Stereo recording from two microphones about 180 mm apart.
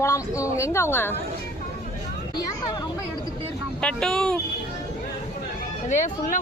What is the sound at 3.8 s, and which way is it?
Speech, 5° left (ahead or behind).